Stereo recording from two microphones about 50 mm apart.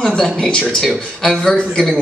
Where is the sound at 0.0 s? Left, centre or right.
Centre.